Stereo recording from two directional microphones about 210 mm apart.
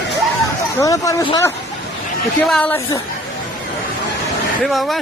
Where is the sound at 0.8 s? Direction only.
15° left (ahead or behind).